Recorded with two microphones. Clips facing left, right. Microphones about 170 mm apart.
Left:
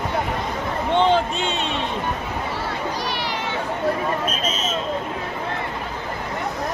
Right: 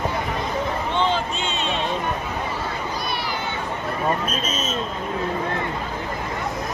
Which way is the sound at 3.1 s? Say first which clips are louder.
Left 1 dB; 80° left.